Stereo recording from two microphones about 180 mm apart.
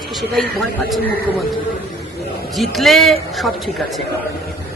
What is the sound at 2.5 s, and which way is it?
Speech, centre (ahead or behind).